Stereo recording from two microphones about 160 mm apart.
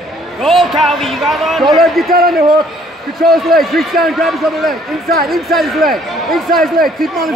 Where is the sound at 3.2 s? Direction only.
Centre (ahead or behind).